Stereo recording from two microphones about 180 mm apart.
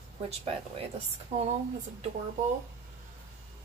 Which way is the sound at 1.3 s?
35° right (ahead or behind).